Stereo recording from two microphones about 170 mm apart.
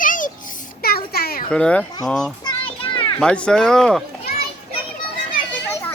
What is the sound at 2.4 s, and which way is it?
Children playing, 30° left (ahead or behind).